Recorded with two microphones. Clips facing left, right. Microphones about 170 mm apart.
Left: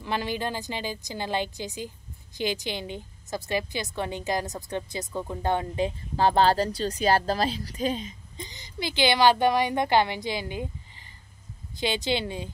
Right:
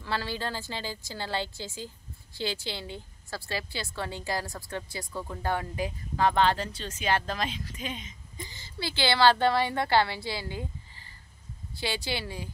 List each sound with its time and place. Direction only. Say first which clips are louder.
0.0 s a woman's voice: left 3 dB; 20° left (ahead or behind); by 8.1 s 35° left (ahead or behind)
8.4 s a woman's voice: left 3 dB; 20° left (ahead or behind)